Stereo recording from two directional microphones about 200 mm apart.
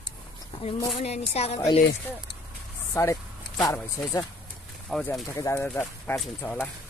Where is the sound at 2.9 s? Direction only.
15° left (ahead or behind).